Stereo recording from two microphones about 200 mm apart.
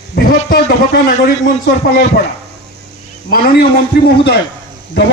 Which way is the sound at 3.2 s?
50° left (ahead or behind).